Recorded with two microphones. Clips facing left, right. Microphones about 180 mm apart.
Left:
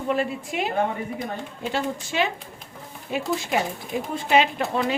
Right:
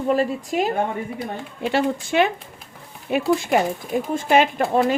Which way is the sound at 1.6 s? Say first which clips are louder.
Right 7 dB; 60° right (ahead or behind).